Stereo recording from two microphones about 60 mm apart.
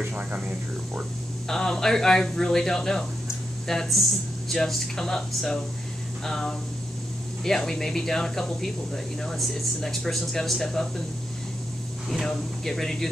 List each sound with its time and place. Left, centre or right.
0.1 s speech: right
1.5 s speech: centre
12.1 s speech: centre